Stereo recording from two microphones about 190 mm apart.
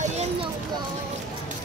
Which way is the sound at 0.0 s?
35° right (ahead or behind).